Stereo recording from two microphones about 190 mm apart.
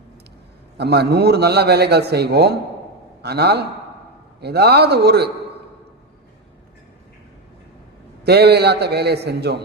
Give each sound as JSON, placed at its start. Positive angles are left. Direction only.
{"t": 0.8, "sound": "a man's voice", "side_deg": -60}
{"t": 8.2, "sound": "a man's voice", "side_deg": -60}